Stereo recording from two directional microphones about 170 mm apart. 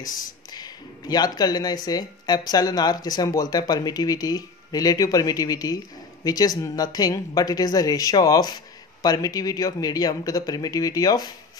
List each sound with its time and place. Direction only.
0.0 s speech: 25° left (ahead or behind)